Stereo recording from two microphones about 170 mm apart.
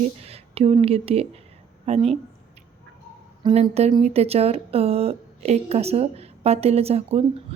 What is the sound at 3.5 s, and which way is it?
A woman's voice, 40° right (ahead or behind).